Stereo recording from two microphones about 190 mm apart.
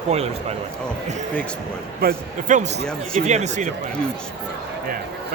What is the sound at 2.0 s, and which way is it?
Speech, 45° right (ahead or behind).